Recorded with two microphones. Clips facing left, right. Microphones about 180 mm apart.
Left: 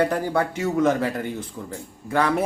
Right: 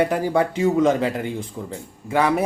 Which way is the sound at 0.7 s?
25° right (ahead or behind).